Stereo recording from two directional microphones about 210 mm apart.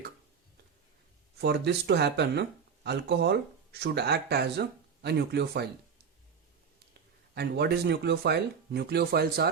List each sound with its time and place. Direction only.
1.4 s speech: 55° right (ahead or behind)
7.3 s speech: 50° right (ahead or behind)